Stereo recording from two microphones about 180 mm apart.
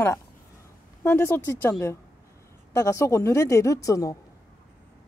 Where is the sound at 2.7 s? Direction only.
15° left (ahead or behind).